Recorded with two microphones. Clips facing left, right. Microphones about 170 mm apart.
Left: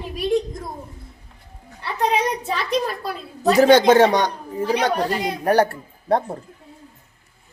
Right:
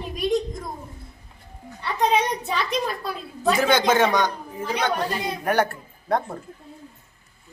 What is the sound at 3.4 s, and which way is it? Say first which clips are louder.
A woman's voice: left 7 dB; 40° left (ahead or behind).